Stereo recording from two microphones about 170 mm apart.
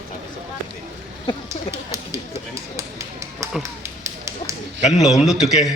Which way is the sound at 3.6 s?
15° right (ahead or behind).